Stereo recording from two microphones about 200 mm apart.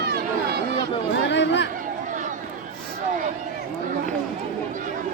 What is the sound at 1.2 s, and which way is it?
Chatter, 60° left (ahead or behind).